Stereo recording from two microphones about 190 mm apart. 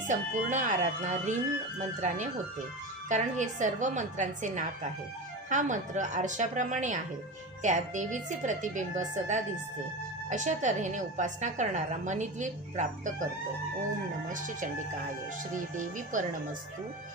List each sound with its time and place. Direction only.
0.1 s a woman's voice: 40° right (ahead or behind)
14.3 s speech: 45° right (ahead or behind)